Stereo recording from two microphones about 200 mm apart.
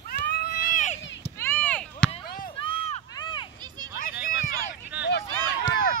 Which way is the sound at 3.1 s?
25° left (ahead or behind).